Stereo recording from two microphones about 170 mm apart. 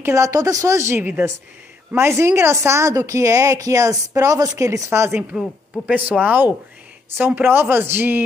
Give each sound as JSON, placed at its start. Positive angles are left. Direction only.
{"t": 0.0, "sound": "a woman's voice", "side_deg": -20}